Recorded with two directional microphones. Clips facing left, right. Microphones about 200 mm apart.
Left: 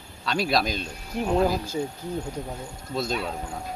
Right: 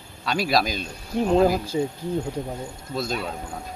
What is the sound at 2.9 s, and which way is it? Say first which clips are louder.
Speech: even; centre (ahead or behind).